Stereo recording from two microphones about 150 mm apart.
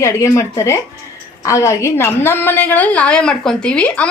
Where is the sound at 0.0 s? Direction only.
20° left (ahead or behind).